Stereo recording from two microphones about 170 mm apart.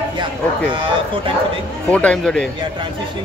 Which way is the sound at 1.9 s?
5° left (ahead or behind).